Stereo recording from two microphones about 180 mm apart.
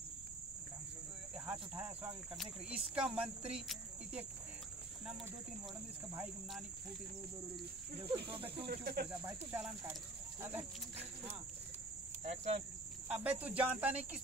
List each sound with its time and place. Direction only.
2.3 s speech: centre (ahead or behind)
6.1 s speech: 5° right (ahead or behind)
8.3 s speech: 30° right (ahead or behind)
8.6 s speech: 60° right (ahead or behind)
9.1 s cricket: 10° right (ahead or behind)
12.2 s speech: 35° right (ahead or behind)
13.1 s cricket: 10° right (ahead or behind)